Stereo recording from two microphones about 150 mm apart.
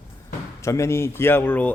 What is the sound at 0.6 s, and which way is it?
Speech, 20° left (ahead or behind).